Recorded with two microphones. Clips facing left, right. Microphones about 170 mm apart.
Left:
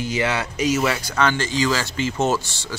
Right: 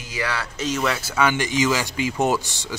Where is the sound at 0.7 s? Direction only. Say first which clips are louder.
Left 2 dB; 5° left (ahead or behind).